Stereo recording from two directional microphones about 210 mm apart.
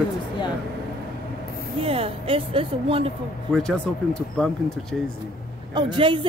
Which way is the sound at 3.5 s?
Centre (ahead or behind).